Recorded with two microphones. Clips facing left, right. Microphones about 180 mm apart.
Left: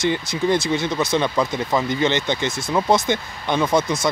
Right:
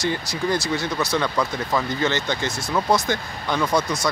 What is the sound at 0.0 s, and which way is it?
Speech, 20° left (ahead or behind).